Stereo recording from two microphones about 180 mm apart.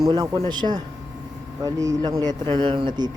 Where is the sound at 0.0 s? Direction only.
20° right (ahead or behind).